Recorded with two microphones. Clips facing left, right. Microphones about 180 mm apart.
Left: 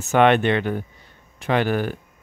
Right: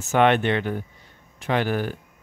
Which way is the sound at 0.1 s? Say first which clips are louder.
Left 2 dB; 70° left (ahead or behind).